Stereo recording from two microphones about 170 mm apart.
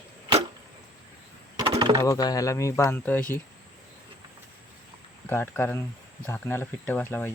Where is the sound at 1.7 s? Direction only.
25° right (ahead or behind).